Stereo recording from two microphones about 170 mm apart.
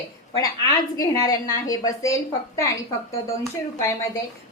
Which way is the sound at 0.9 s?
20° left (ahead or behind).